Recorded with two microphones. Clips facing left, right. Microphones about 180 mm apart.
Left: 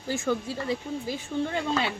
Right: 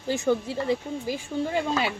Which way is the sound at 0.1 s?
20° right (ahead or behind).